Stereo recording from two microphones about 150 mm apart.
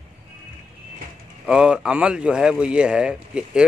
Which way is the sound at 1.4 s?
5° right (ahead or behind).